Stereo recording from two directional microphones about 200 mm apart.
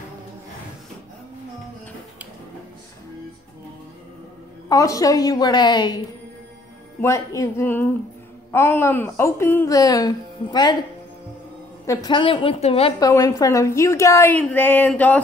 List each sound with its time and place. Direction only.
4.6 s a woman's voice: 15° left (ahead or behind)
7.0 s a woman's voice: 15° left (ahead or behind)
11.8 s a woman's voice: 15° left (ahead or behind)
13.0 s a woman's voice: 15° left (ahead or behind)